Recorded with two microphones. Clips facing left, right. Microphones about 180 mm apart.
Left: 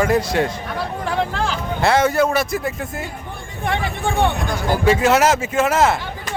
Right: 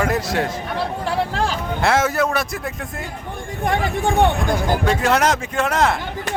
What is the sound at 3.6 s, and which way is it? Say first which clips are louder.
Speech: right 2 dB; 45° right (ahead or behind).